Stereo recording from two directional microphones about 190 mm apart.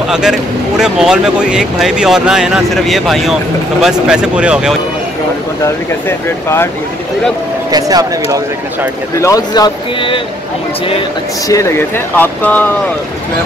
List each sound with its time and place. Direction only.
0.1 s speech: 5° right (ahead or behind)
6.0 s speech: 10° left (ahead or behind)
7.7 s speech: 20° right (ahead or behind)
9.2 s speech: 20° left (ahead or behind)
11.4 s speech: 15° left (ahead or behind)